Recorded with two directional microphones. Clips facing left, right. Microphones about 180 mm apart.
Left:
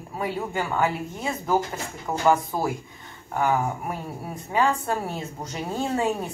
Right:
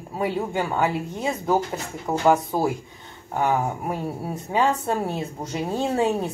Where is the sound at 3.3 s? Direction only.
25° right (ahead or behind).